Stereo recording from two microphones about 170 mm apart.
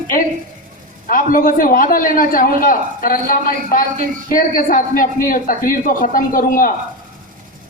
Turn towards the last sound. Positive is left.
turn(degrees=55)  # may be behind; listen again after turning